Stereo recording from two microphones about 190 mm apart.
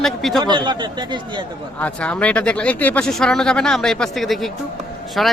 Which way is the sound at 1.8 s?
5° left (ahead or behind).